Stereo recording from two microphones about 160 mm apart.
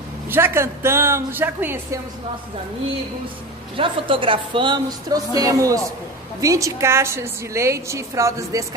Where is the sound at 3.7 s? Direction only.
35° right (ahead or behind).